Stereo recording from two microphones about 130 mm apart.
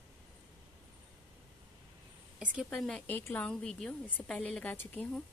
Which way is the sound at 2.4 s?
10° right (ahead or behind).